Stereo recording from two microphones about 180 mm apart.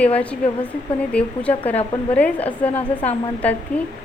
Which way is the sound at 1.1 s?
5° left (ahead or behind).